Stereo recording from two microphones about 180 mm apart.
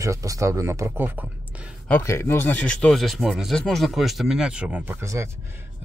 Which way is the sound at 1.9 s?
10° left (ahead or behind).